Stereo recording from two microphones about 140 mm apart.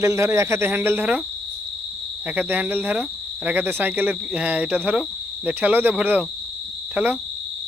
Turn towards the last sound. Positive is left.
turn(degrees=-15)  # may be behind; listen again after turning